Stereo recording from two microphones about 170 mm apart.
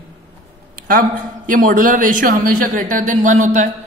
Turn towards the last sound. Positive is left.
turn(degrees=-45)  # may be behind; listen again after turning